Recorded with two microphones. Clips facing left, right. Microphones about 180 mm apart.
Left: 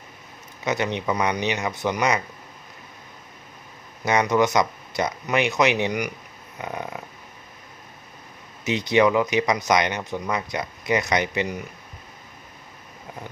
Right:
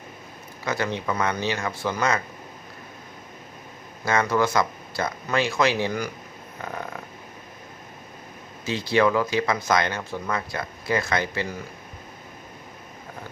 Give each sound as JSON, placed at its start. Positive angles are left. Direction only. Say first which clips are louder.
{"t": 0.6, "sound": "speech", "louder": "left 2 dB", "side_deg": 20}
{"t": 4.0, "sound": "speech", "louder": "left 2 dB", "side_deg": 20}
{"t": 6.6, "sound": "a sound", "louder": "left 2 dB", "side_deg": 15}
{"t": 8.6, "sound": "speech", "louder": "left 2 dB", "side_deg": 20}